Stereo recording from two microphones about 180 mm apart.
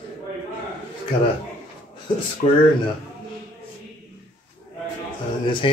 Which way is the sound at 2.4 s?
35° left (ahead or behind).